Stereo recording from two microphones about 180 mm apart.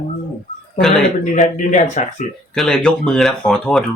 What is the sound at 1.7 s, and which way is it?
Speech, 40° left (ahead or behind).